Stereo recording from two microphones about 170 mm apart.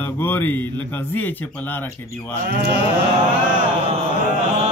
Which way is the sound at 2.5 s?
75° right (ahead or behind).